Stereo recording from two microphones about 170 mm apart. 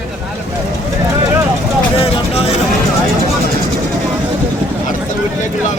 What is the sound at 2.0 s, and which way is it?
Vehicle, 35° left (ahead or behind).